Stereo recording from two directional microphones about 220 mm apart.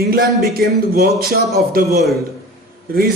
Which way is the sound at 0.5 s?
45° right (ahead or behind).